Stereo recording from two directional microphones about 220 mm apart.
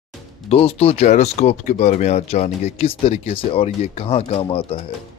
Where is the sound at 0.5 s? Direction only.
25° left (ahead or behind).